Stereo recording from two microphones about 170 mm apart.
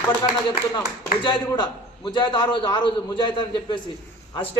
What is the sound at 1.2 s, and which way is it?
A woman's voice, 25° left (ahead or behind).